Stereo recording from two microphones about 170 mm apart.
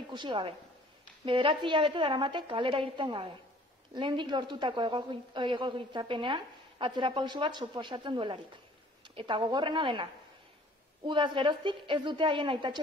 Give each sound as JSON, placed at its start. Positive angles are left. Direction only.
{"t": 0.1, "sound": "a woman's voice", "side_deg": -30}
{"t": 11.1, "sound": "a woman's voice", "side_deg": -30}